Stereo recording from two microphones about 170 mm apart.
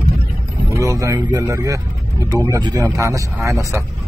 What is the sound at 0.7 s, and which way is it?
A man's voice, 20° right (ahead or behind).